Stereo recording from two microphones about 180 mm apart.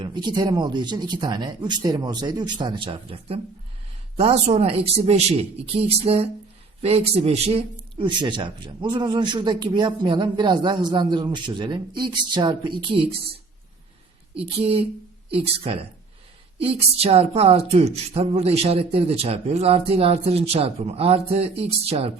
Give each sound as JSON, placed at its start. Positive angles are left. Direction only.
{"t": 0.0, "sound": "a woman's voice", "side_deg": -25}
{"t": 14.3, "sound": "a woman's voice", "side_deg": -35}